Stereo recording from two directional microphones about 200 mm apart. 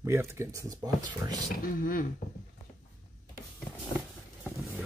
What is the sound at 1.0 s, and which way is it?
Speech, 45° left (ahead or behind).